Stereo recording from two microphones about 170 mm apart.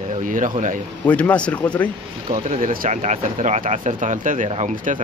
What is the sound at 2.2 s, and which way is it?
Speech, 40° right (ahead or behind).